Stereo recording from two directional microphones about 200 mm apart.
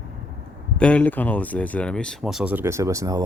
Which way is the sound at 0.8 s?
5° left (ahead or behind).